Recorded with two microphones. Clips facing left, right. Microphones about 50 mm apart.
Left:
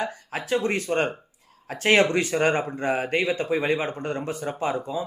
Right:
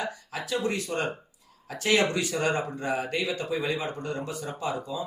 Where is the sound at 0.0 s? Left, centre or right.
Left.